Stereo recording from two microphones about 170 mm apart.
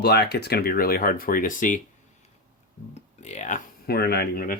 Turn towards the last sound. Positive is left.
turn(degrees=65)  # may be behind; listen again after turning